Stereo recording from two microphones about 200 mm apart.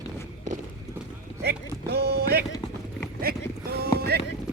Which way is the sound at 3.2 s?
50° right (ahead or behind).